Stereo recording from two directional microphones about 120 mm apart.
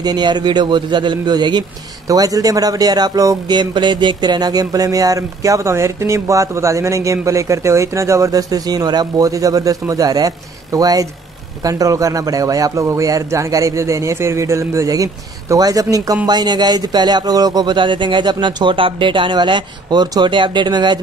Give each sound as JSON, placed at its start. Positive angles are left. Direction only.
{"t": 0.0, "sound": "a man's voice", "side_deg": -35}